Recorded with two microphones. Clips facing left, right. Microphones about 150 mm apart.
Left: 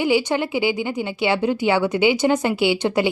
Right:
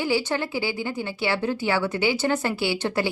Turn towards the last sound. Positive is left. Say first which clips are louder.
# left 6 dB
turn(degrees=15)  # may be behind; listen again after turning